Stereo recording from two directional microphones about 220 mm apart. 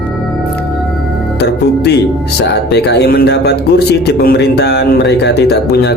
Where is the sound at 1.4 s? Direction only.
50° left (ahead or behind).